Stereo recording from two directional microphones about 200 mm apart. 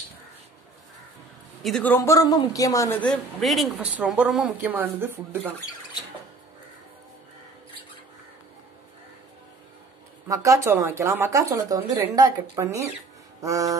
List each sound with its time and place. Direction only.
1.6 s a man's voice: 5° left (ahead or behind); by 5.5 s 10° right (ahead or behind)
10.2 s a woman's voice: 15° right (ahead or behind)